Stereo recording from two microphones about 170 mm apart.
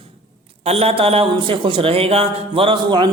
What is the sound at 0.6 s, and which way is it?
A man's voice, 35° right (ahead or behind).